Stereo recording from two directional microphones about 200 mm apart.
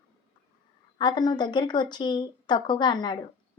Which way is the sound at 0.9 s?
20° left (ahead or behind).